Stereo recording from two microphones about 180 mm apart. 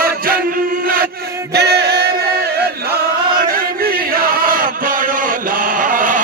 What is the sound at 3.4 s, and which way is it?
Chant, 55° right (ahead or behind).